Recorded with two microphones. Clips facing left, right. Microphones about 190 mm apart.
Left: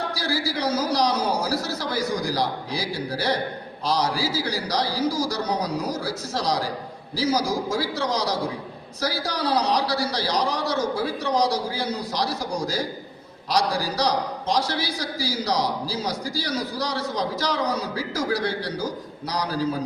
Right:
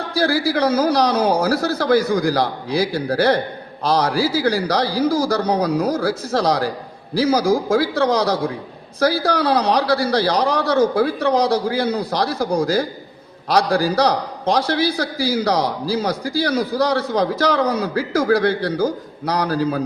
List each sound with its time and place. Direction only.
0.1 s a man's voice: 55° right (ahead or behind)